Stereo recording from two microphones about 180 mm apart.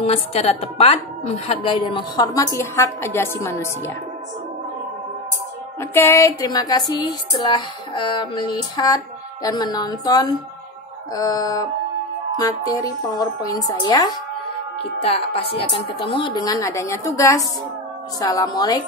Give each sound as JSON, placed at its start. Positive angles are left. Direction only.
{"t": 0.0, "sound": "a woman's voice", "side_deg": 35}
{"t": 5.8, "sound": "a woman's voice", "side_deg": 15}